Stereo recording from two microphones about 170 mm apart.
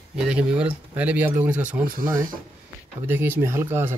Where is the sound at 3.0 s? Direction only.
10° right (ahead or behind).